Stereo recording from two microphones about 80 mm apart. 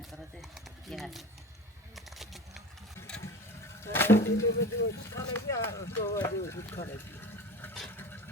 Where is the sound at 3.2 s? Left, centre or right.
Left.